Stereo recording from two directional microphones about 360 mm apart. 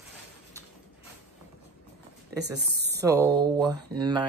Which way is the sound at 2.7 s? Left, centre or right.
Right.